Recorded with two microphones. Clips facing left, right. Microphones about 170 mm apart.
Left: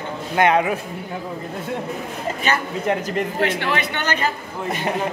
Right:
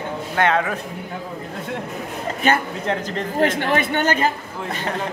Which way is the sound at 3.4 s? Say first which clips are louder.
Right 6 dB; 45° right (ahead or behind).